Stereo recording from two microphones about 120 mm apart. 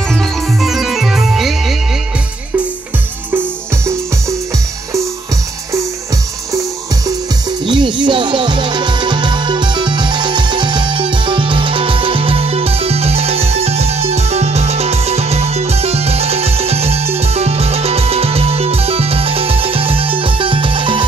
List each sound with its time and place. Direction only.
0.1 s music: centre (ahead or behind)
3.8 s music: 20° right (ahead or behind)
7.6 s music: 40° right (ahead or behind)